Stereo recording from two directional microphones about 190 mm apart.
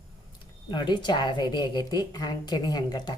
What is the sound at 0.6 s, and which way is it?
A woman's voice, 25° left (ahead or behind).